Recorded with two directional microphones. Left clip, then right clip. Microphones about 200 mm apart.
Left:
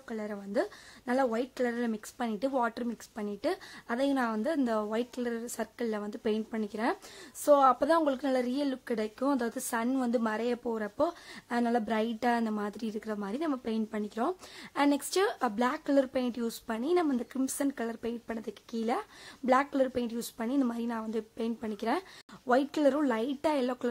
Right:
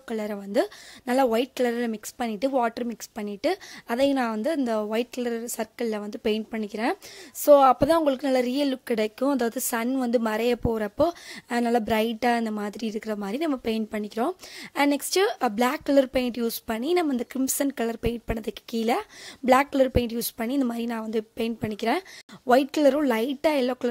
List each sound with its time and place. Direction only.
0.1 s speech: 35° right (ahead or behind)